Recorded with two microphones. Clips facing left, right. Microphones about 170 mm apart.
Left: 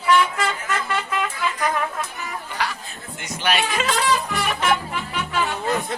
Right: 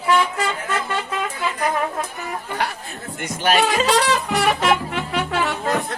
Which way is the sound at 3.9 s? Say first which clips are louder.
Right 3 dB; 75° right (ahead or behind).